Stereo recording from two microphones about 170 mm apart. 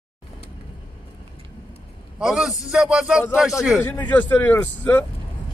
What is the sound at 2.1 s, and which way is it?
A man's voice, 5° right (ahead or behind).